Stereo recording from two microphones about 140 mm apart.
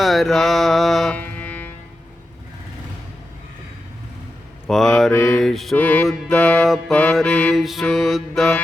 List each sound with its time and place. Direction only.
0.0 s music: centre (ahead or behind)
4.6 s mantra: 5° left (ahead or behind)
5.1 s music: 20° left (ahead or behind)
5.4 s mantra: centre (ahead or behind)
5.7 s music: 10° left (ahead or behind)
7.2 s mantra: 5° left (ahead or behind)